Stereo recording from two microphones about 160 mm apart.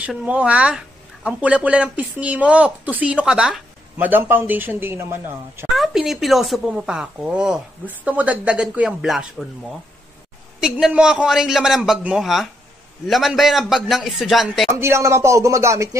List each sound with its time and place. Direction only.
0.0 s speech: 5° right (ahead or behind)
5.8 s speech: centre (ahead or behind)
10.6 s speech: 5° right (ahead or behind)
14.8 s speech: 15° right (ahead or behind)